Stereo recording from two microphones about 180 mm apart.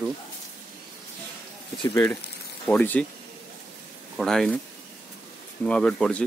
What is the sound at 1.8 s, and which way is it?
Speech, 15° left (ahead or behind).